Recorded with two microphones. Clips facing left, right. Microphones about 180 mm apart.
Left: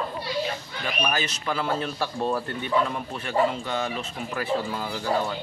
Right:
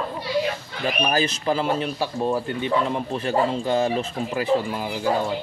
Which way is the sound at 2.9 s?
30° right (ahead or behind).